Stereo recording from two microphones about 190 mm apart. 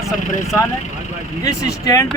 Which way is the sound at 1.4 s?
15° left (ahead or behind).